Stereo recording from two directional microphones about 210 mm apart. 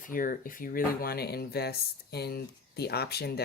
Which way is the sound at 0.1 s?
40° left (ahead or behind).